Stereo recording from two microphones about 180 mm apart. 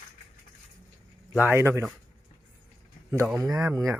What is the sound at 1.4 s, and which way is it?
Speech, 15° right (ahead or behind).